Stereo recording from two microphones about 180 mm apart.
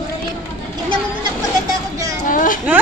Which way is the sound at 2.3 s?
45° left (ahead or behind).